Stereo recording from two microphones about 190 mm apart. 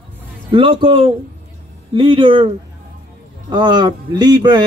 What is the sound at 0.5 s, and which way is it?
Speech, 25° right (ahead or behind).